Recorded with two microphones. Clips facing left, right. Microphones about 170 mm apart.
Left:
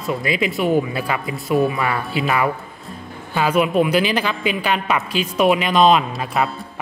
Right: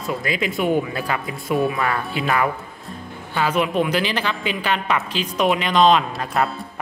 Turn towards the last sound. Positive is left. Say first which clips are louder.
# left 1 dB
turn(degrees=0)  # may be behind; listen again after turning